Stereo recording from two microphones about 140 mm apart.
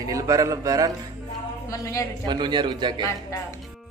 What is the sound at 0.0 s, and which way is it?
Speech, 25° right (ahead or behind).